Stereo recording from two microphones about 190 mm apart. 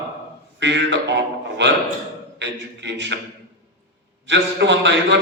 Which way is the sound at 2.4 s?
70° right (ahead or behind).